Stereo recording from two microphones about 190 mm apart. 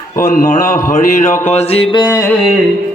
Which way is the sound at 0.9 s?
45° left (ahead or behind).